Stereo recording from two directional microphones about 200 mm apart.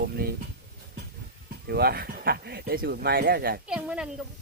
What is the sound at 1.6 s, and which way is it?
Speech, 50° right (ahead or behind).